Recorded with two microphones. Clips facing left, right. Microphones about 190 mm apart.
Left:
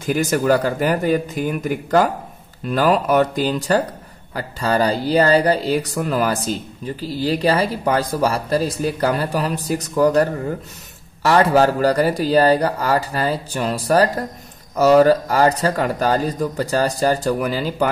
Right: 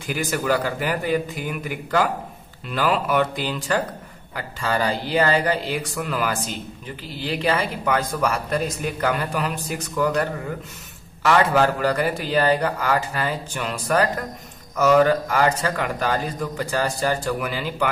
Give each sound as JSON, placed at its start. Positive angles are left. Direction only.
{"t": 0.0, "sound": "speech", "side_deg": 45}